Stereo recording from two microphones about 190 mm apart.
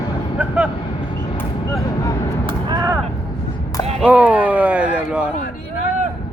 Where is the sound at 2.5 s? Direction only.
20° right (ahead or behind).